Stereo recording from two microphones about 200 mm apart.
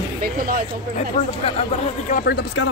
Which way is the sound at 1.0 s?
30° left (ahead or behind).